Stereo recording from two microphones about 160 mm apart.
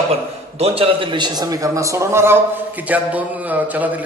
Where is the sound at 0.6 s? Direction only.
35° right (ahead or behind).